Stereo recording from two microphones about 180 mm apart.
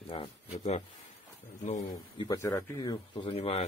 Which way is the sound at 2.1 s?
20° left (ahead or behind).